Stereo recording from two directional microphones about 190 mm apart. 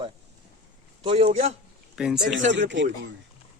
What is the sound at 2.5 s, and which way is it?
Speech, 70° right (ahead or behind).